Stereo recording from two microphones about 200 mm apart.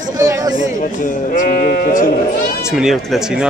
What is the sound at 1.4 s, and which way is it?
Sheep, 45° left (ahead or behind).